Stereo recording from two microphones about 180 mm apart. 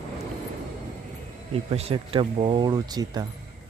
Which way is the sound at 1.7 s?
35° right (ahead or behind).